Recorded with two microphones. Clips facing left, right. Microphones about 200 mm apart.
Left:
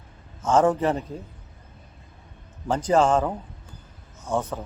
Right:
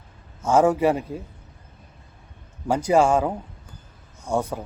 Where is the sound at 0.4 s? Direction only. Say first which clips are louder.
Right 2 dB; 10° right (ahead or behind).